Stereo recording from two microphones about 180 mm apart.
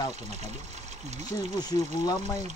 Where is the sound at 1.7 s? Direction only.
20° left (ahead or behind).